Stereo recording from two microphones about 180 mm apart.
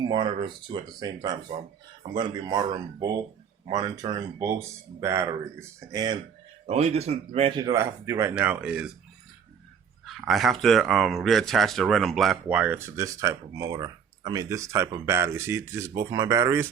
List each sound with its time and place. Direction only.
0.0 s speech: 25° right (ahead or behind)
6.7 s speech: 35° right (ahead or behind)
7.6 s speech: 15° right (ahead or behind)
10.1 s speech: centre (ahead or behind)